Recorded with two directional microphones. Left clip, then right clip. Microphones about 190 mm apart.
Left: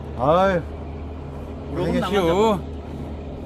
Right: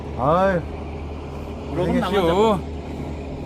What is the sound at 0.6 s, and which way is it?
Vehicle, 70° right (ahead or behind).